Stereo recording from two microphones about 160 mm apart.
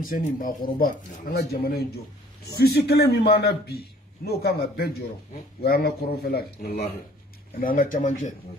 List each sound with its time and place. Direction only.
0.0 s speech: 60° left (ahead or behind)
2.7 s a man's voice: 90° left; by 6.8 s 75° left (ahead or behind)
7.6 s speech: 60° left (ahead or behind)